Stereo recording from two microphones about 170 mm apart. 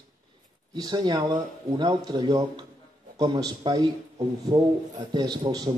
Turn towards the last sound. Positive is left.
turn(degrees=-25)  # may be behind; listen again after turning